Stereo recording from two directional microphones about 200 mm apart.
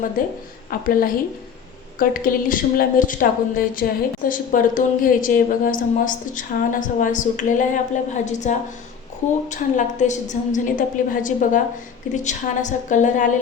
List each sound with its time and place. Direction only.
0.2 s a woman's voice: 45° left (ahead or behind)